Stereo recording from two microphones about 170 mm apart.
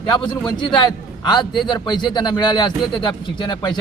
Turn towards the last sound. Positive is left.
turn(degrees=25)  # may be behind; listen again after turning